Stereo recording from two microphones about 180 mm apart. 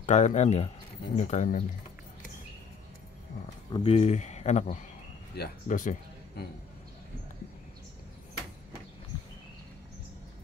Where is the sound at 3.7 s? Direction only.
30° left (ahead or behind); by 6.4 s 50° left (ahead or behind).